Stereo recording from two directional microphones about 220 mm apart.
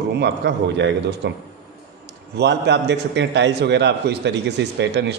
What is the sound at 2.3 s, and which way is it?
A man's voice, 50° right (ahead or behind).